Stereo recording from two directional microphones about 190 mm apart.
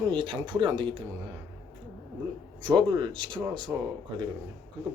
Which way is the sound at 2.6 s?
25° right (ahead or behind).